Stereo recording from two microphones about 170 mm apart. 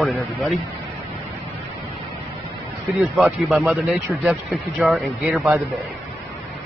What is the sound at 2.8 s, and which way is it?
Speech, centre (ahead or behind).